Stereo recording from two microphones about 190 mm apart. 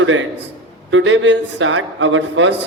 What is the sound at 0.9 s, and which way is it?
Speech, 90° right.